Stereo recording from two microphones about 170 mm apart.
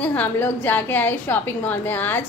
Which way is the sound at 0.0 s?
10° left (ahead or behind).